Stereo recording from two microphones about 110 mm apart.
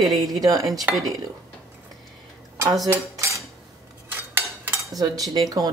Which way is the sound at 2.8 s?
25° right (ahead or behind).